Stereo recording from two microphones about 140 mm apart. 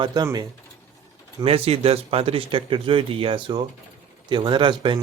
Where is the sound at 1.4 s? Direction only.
45° right (ahead or behind).